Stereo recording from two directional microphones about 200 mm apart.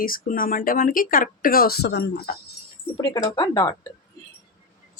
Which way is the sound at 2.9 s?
20° left (ahead or behind).